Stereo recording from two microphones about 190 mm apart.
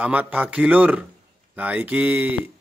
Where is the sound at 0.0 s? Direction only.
10° right (ahead or behind).